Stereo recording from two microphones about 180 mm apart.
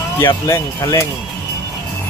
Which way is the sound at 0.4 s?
15° left (ahead or behind).